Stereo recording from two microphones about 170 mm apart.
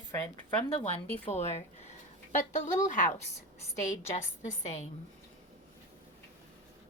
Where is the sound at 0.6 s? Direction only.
35° left (ahead or behind).